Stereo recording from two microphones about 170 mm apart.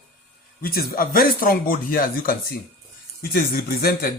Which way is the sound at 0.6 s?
60° left (ahead or behind).